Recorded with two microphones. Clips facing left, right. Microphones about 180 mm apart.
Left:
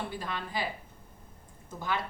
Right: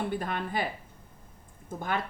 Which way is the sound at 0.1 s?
55° right (ahead or behind).